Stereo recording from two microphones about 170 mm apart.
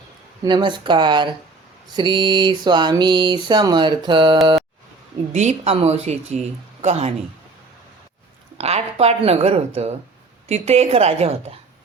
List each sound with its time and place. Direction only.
0.4 s a sound: 25° right (ahead or behind)
5.3 s speech: 40° right (ahead or behind)
8.5 s speech: 40° right (ahead or behind)